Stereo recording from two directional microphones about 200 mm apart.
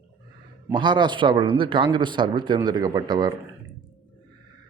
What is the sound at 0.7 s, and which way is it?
Speech, 25° right (ahead or behind).